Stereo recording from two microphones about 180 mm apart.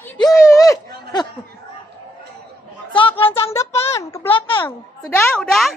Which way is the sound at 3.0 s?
30° left (ahead or behind).